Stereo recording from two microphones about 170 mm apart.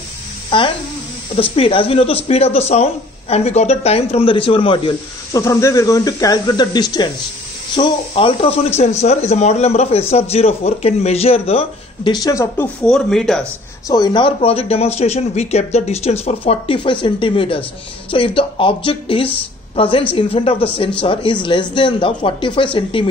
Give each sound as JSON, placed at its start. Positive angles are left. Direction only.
{"t": 0.5, "sound": "speech", "side_deg": 25}
{"t": 5.4, "sound": "speech", "side_deg": 15}
{"t": 13.8, "sound": "speech", "side_deg": 25}